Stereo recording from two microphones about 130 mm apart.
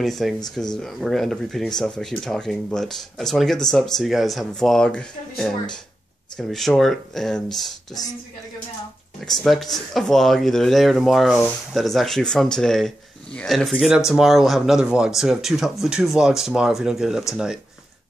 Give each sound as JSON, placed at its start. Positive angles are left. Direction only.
{"t": 0.0, "sound": "speech", "side_deg": 0}
{"t": 8.0, "sound": "speech", "side_deg": 30}
{"t": 9.2, "sound": "speech", "side_deg": 5}